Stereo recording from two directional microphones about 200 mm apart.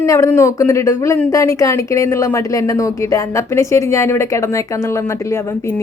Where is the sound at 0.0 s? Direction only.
15° left (ahead or behind).